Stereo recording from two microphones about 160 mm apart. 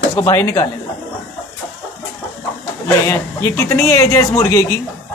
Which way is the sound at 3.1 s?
15° left (ahead or behind).